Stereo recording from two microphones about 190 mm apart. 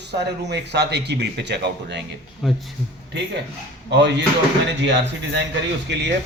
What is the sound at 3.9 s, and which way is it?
A man's voice, 70° right (ahead or behind).